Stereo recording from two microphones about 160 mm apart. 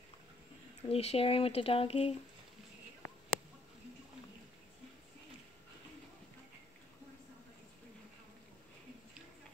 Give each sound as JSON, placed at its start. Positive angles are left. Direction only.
{"t": 0.8, "sound": "speech", "side_deg": 35}